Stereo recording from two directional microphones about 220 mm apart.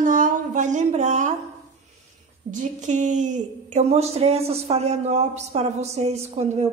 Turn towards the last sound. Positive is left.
turn(degrees=-30)  # may be behind; listen again after turning